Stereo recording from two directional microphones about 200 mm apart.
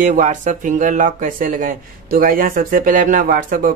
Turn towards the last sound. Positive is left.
turn(degrees=-45)  # may be behind; listen again after turning